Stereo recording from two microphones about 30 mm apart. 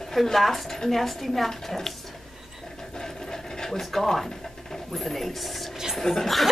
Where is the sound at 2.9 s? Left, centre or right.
Centre.